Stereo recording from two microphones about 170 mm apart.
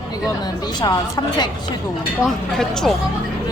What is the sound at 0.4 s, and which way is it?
A woman's voice, 25° left (ahead or behind).